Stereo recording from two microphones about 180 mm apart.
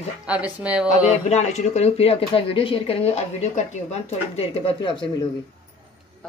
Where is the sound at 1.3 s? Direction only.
35° left (ahead or behind).